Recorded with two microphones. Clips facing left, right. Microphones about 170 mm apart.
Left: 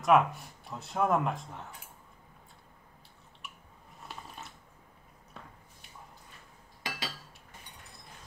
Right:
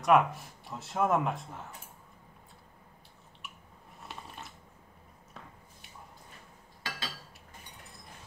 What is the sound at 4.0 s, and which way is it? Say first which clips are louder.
Ratchet: even; centre (ahead or behind).